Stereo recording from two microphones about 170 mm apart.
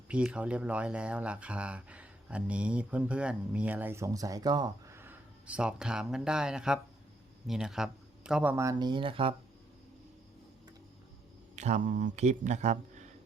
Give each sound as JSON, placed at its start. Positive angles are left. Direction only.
{"t": 0.1, "sound": "speech", "side_deg": -5}
{"t": 11.5, "sound": "speech", "side_deg": -45}